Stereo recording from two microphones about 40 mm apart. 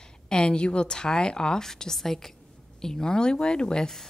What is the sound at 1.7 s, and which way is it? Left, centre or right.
A woman's voice, centre.